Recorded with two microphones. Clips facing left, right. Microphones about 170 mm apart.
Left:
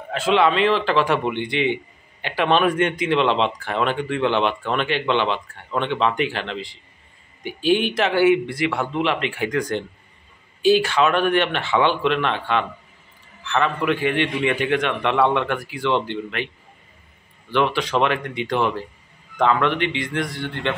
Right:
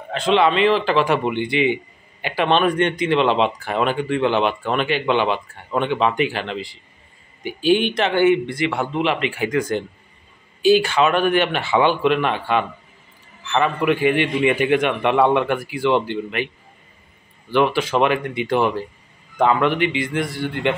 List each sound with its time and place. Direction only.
0.1 s a man's voice: 5° left (ahead or behind)
17.5 s speech: 5° right (ahead or behind)